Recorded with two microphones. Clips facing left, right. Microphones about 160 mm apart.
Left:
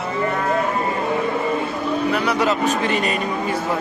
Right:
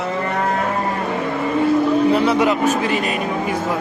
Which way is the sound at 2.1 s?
20° right (ahead or behind).